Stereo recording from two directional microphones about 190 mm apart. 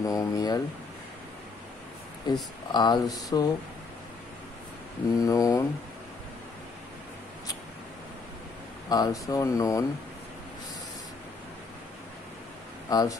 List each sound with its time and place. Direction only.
0.0 s speech: 20° left (ahead or behind)
2.3 s speech: 20° left (ahead or behind)
5.1 s speech: 20° left (ahead or behind)
8.8 s speech: 20° left (ahead or behind)
12.9 s speech: 20° left (ahead or behind)